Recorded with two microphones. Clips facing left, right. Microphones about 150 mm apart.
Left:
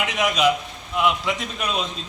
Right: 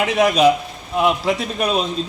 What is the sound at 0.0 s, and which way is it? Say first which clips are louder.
A man's voice: right 6 dB; 35° right (ahead or behind).